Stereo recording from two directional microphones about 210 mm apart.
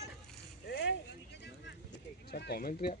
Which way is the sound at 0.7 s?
55° left (ahead or behind).